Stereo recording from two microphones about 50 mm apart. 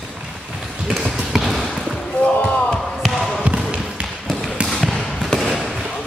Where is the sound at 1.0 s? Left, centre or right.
Centre.